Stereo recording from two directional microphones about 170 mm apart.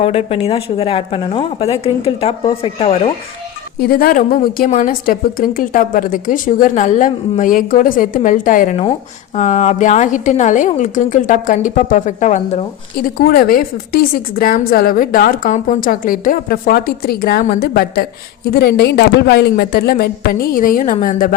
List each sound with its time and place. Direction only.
0.0 s a woman's voice: 35° left (ahead or behind)
3.8 s a woman's voice: 60° left (ahead or behind)